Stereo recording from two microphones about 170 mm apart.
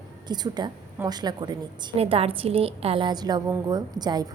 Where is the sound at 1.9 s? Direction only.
35° right (ahead or behind).